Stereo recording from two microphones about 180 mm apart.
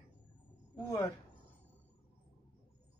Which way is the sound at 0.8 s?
20° left (ahead or behind).